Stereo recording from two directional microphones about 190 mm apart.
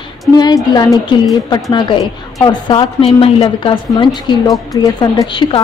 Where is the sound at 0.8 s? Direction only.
20° left (ahead or behind).